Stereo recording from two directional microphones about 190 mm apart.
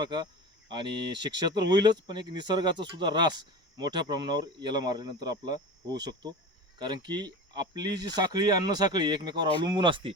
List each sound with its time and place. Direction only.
0.0 s speech: 20° right (ahead or behind)